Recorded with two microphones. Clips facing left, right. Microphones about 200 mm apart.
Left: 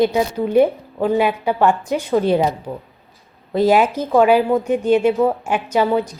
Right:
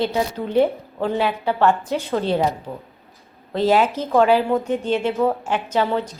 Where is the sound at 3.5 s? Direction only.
10° left (ahead or behind).